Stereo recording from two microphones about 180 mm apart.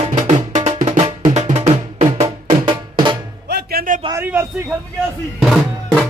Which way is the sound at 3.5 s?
60° right (ahead or behind).